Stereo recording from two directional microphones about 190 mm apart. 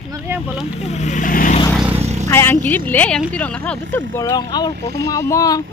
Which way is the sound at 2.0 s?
35° right (ahead or behind).